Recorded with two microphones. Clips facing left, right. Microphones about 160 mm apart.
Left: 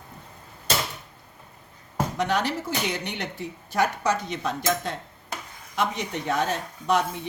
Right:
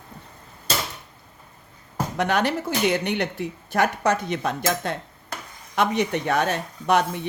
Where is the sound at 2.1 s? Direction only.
60° right (ahead or behind).